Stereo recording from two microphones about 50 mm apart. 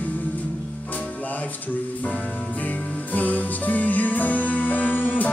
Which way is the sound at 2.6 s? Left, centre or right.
Left.